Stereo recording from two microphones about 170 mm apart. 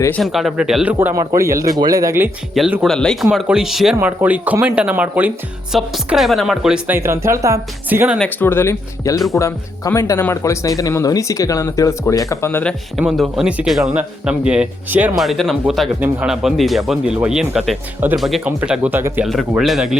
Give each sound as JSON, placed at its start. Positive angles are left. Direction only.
{"t": 0.2, "sound": "speech", "side_deg": 0}
{"t": 0.9, "sound": "a woman's voice", "side_deg": -15}
{"t": 2.8, "sound": "a woman's voice", "side_deg": 5}
{"t": 8.2, "sound": "speech", "side_deg": 10}
{"t": 13.0, "sound": "a woman's voice", "side_deg": 0}
{"t": 19.3, "sound": "speech", "side_deg": 0}